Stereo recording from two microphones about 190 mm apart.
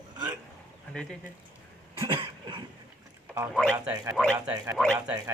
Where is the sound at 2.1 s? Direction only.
25° right (ahead or behind).